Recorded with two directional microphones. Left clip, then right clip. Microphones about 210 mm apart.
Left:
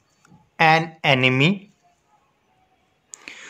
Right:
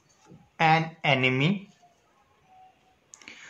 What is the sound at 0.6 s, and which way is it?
Speech, 50° left (ahead or behind).